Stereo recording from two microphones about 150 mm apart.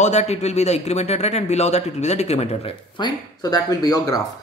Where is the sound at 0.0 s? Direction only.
50° left (ahead or behind).